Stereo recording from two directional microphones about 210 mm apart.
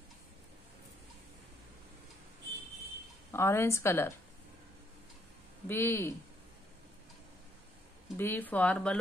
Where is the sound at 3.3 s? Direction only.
10° left (ahead or behind).